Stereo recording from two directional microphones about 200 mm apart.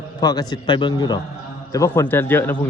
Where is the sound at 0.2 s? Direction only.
20° left (ahead or behind).